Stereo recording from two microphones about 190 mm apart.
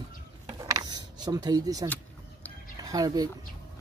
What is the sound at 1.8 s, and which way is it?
Vehicle, 10° left (ahead or behind).